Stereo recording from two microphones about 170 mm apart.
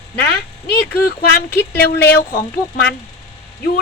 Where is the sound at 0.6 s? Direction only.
70° left (ahead or behind).